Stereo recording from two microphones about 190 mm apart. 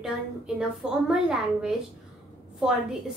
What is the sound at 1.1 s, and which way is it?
A woman's voice, 5° right (ahead or behind).